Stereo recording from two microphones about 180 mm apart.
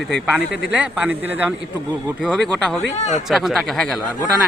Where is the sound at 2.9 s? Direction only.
40° left (ahead or behind).